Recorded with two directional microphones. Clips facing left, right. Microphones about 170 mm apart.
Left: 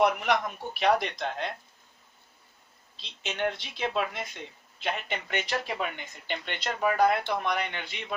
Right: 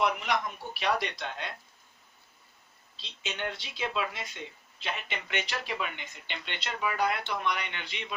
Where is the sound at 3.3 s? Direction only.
50° left (ahead or behind).